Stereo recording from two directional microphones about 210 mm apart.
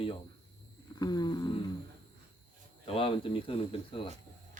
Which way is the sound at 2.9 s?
25° left (ahead or behind).